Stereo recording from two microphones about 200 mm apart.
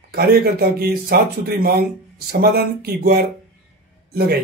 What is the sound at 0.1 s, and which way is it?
Speech, 50° right (ahead or behind).